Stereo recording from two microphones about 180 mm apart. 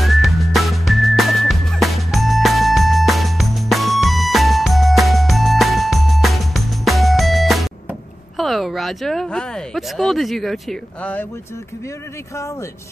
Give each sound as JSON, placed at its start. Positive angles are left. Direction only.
{"t": 0.0, "sound": "music", "side_deg": 0}
{"t": 8.4, "sound": "speech", "side_deg": 0}